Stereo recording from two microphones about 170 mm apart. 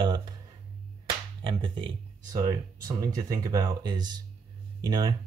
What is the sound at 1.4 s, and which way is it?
Speech, 30° right (ahead or behind).